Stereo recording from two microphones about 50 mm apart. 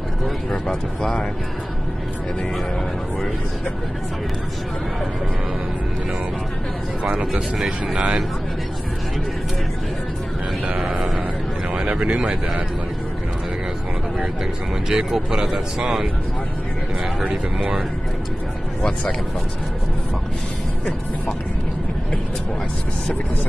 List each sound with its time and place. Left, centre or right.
0.5 s speech: centre
7.0 s speech: right
7.5 s speech: centre
10.8 s a sound: centre
11.7 s speech: centre
14.1 s speech: centre
17.2 s speech: centre
18.8 s speech: centre